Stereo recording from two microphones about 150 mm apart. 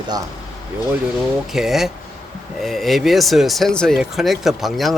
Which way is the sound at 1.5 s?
Centre (ahead or behind).